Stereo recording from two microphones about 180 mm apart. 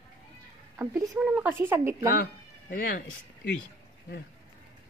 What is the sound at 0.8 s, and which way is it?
Speech, 10° right (ahead or behind).